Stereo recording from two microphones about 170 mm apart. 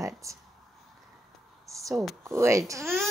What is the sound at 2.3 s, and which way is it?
Speech, 15° right (ahead or behind).